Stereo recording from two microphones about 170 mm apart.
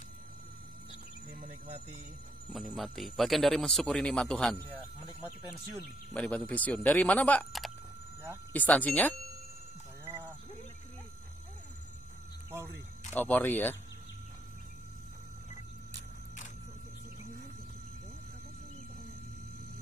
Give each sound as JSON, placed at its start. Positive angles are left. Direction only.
{"t": 1.4, "sound": "a sound", "side_deg": -40}
{"t": 2.5, "sound": "speech", "side_deg": 0}
{"t": 12.4, "sound": "speech", "side_deg": -15}
{"t": 13.1, "sound": "speech", "side_deg": 10}